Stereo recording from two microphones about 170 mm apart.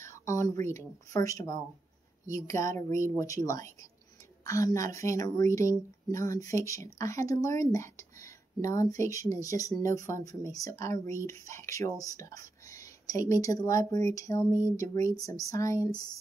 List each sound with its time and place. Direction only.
0.0 s speech: 15° left (ahead or behind)